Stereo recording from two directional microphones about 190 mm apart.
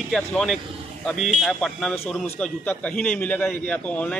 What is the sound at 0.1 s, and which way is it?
A man's voice, centre (ahead or behind).